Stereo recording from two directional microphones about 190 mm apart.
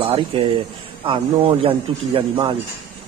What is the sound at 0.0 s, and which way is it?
Speech, 30° right (ahead or behind).